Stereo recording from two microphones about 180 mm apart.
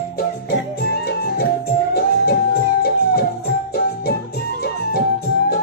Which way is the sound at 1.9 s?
60° left (ahead or behind).